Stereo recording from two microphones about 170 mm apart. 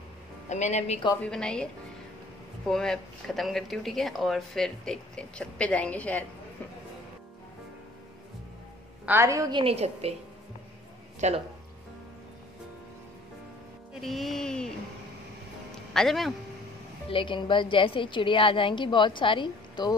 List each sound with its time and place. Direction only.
0.5 s a woman's voice: 40° left (ahead or behind)
1.2 s speech: 5° left (ahead or behind)
2.7 s speech: 5° left (ahead or behind)
9.0 s a woman's voice: 15° right (ahead or behind); by 10.1 s 35° right (ahead or behind)
11.1 s speech: 40° right (ahead or behind)
14.0 s speech: centre (ahead or behind)
15.7 s a sound: centre (ahead or behind)
17.1 s a woman's voice: 30° left (ahead or behind)